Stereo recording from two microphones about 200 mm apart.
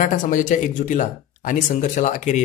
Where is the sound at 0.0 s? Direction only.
40° left (ahead or behind).